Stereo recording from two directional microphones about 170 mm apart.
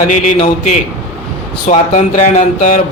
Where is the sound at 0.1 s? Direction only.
45° left (ahead or behind).